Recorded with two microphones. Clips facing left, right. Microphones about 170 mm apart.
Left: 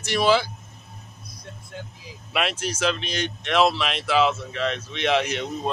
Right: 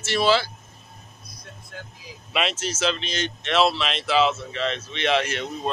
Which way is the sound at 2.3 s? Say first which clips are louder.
Even; 10° left (ahead or behind).